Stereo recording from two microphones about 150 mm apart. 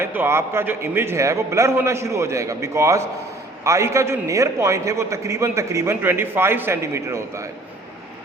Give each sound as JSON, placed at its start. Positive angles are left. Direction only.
{"t": 0.0, "sound": "a man's voice", "side_deg": -15}